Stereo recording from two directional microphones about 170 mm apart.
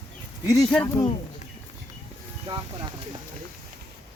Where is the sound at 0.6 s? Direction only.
5° left (ahead or behind).